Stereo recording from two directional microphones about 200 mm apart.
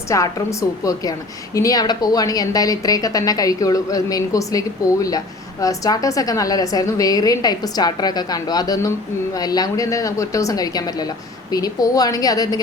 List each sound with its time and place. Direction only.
0.1 s a woman's voice: 15° left (ahead or behind)